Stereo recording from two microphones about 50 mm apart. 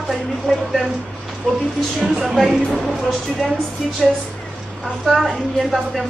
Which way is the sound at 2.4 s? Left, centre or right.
Centre.